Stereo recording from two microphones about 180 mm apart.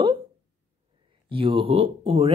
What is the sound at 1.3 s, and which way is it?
Speech, 30° right (ahead or behind).